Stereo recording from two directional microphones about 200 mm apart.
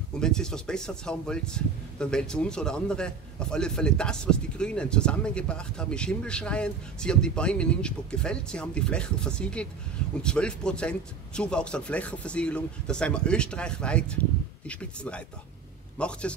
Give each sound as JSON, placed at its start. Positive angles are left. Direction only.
{"t": 0.2, "sound": "speech", "side_deg": 5}